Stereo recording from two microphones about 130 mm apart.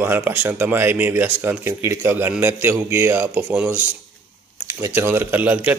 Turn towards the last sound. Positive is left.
turn(degrees=-15)  # may be behind; listen again after turning